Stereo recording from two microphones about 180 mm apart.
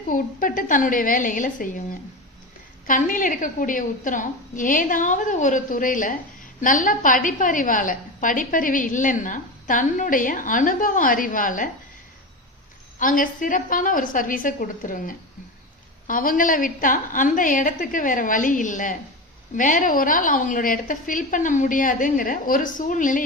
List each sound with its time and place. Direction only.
0.1 s a woman's voice: 50° left (ahead or behind)
13.0 s a woman's voice: 50° left (ahead or behind)